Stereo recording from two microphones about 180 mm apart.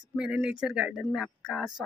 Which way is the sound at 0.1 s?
5° right (ahead or behind).